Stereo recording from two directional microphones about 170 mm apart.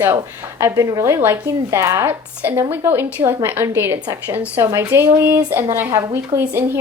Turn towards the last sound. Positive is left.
turn(degrees=-15)  # may be behind; listen again after turning